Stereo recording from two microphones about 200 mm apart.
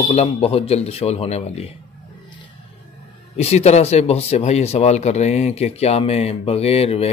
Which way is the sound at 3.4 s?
35° left (ahead or behind).